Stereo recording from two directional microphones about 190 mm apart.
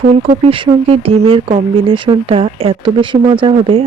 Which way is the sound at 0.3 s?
25° right (ahead or behind).